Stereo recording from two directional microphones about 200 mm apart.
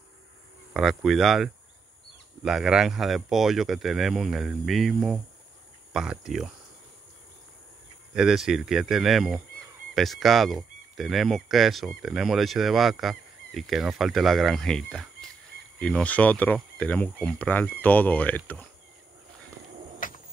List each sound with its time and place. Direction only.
0.7 s speech: centre (ahead or behind)
8.1 s speech: centre (ahead or behind)
20.0 s a sound: 40° left (ahead or behind)